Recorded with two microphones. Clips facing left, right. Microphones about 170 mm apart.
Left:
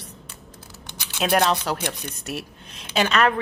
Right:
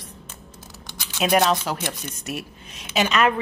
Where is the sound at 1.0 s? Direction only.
5° right (ahead or behind).